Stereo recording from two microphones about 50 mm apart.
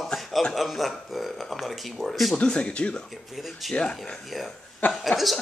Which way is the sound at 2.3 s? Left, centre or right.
Centre.